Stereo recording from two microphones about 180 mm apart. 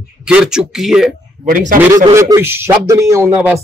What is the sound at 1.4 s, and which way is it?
Speech, 50° right (ahead or behind).